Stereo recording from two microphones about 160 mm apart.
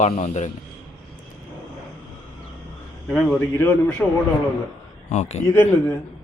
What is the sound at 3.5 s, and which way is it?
Speech, 10° left (ahead or behind).